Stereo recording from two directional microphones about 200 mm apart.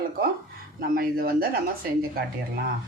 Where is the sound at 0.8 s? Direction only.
50° right (ahead or behind).